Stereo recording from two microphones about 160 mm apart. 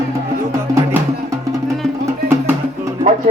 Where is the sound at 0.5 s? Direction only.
20° right (ahead or behind).